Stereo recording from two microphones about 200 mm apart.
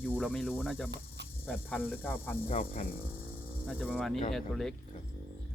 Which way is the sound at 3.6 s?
5° right (ahead or behind).